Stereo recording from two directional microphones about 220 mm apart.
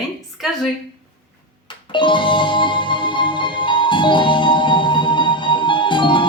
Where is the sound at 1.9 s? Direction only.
20° left (ahead or behind).